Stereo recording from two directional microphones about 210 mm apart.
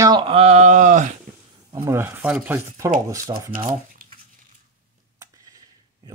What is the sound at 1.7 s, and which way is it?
Speech, 15° right (ahead or behind).